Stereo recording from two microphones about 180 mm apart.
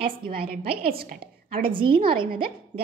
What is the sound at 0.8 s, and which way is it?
Speech, 55° right (ahead or behind).